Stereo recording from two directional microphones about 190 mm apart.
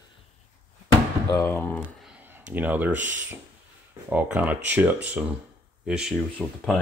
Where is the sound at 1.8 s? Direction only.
5° right (ahead or behind).